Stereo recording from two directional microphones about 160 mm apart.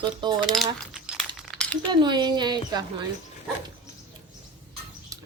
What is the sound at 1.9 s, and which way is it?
A woman's voice, 30° right (ahead or behind).